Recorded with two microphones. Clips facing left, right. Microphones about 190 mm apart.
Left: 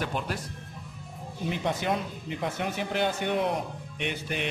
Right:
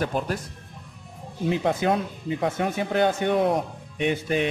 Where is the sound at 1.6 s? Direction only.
50° right (ahead or behind).